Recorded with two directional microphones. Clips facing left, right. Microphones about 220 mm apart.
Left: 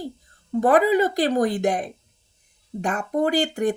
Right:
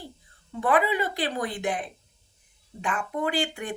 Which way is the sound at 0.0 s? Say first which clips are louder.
Left 10 dB; 40° left (ahead or behind).